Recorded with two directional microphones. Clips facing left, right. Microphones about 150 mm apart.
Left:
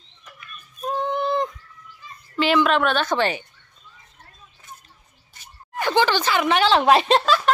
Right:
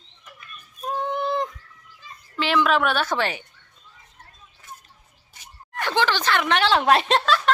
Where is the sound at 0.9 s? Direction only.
5° right (ahead or behind).